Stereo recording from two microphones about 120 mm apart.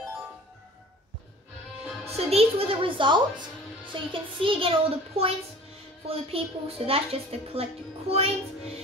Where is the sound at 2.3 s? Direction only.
50° right (ahead or behind).